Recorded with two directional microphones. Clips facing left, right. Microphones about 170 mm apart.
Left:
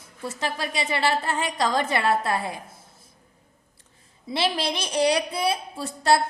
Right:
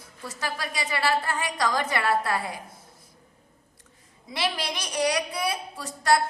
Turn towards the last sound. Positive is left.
turn(degrees=30)  # may be behind; listen again after turning